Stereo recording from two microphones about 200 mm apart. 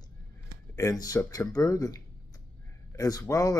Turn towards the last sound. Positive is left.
turn(degrees=15)  # may be behind; listen again after turning